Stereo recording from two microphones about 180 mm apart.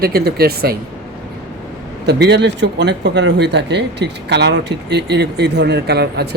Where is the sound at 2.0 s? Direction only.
70° right (ahead or behind).